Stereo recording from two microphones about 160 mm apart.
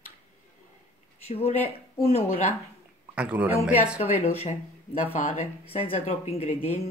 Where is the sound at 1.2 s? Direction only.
40° left (ahead or behind).